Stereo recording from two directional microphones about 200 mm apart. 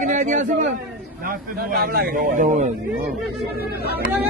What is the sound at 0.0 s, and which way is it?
Speech, 40° right (ahead or behind).